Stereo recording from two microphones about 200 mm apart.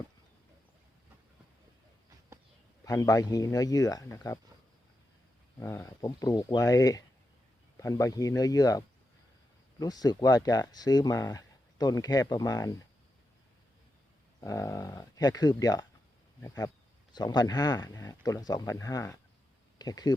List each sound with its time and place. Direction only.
2.8 s speech: 15° left (ahead or behind)
5.5 s speech: 15° left (ahead or behind)
9.8 s speech: 20° left (ahead or behind)
14.4 s speech: 15° left (ahead or behind)